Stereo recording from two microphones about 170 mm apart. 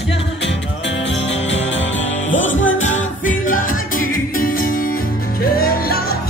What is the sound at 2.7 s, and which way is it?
Music, 45° left (ahead or behind).